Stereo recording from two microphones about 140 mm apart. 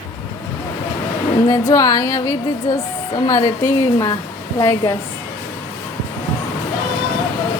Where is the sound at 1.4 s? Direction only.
25° left (ahead or behind).